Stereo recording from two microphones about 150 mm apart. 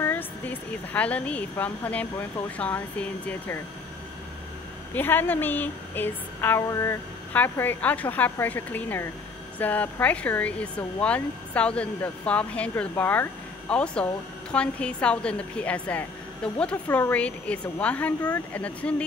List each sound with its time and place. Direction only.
0.0 s speech: 10° left (ahead or behind)
4.9 s speech: 15° left (ahead or behind)